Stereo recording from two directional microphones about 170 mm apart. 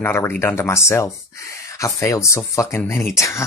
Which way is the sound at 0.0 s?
10° left (ahead or behind).